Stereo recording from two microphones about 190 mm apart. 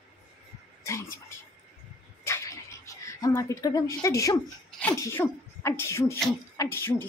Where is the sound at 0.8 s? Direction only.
15° left (ahead or behind).